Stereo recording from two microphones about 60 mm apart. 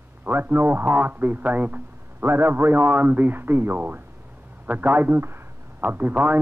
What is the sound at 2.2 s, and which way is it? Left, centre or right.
A man's voice, right.